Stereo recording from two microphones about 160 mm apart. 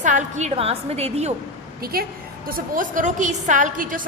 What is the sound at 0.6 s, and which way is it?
Speech, 40° right (ahead or behind).